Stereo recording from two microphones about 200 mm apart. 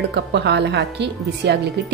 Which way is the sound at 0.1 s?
60° right (ahead or behind).